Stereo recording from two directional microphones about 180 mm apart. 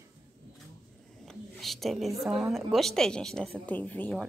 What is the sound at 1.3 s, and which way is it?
A woman's voice, centre (ahead or behind).